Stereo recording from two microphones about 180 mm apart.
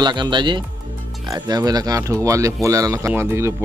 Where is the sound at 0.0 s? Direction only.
25° right (ahead or behind).